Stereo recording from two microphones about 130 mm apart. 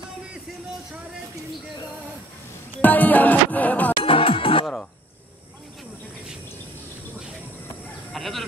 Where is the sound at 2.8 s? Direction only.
15° left (ahead or behind).